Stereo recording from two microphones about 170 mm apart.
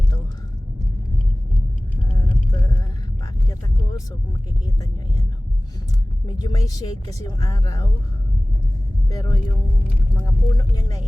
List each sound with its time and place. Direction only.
2.1 s a sound: 20° left (ahead or behind)
4.6 s speech: 20° left (ahead or behind)
6.2 s speech: 20° left (ahead or behind)
9.0 s speech: 25° left (ahead or behind)